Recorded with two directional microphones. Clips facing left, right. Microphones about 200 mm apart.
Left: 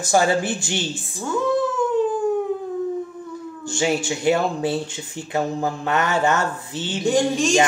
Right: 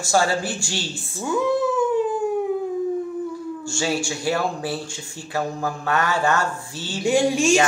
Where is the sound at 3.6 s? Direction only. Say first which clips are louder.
Left 4 dB; 20° left (ahead or behind).